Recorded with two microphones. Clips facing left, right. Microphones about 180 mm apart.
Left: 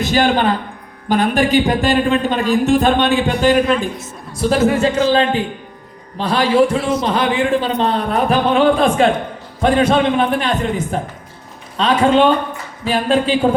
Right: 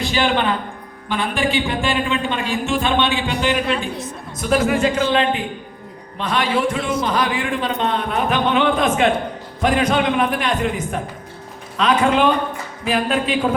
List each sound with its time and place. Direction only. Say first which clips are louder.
0.0 s a man's voice: left 4 dB; 45° left (ahead or behind)
4.4 s speech: left 3 dB; 30° left (ahead or behind)